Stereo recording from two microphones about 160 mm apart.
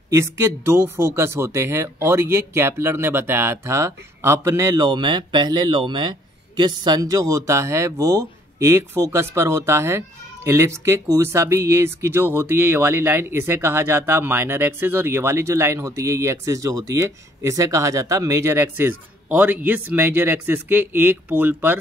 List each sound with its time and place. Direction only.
0.1 s speech: 15° right (ahead or behind)